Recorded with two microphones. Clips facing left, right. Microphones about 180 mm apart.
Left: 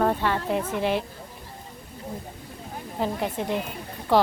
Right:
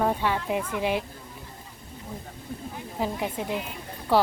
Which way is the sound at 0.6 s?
40° left (ahead or behind).